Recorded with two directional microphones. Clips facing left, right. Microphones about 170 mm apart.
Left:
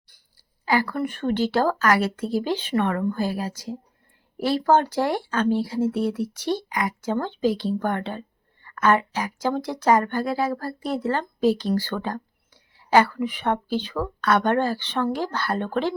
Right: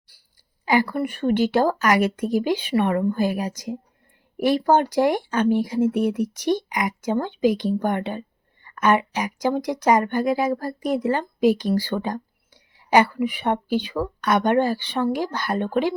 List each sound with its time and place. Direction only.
0.1 s speech: 15° right (ahead or behind)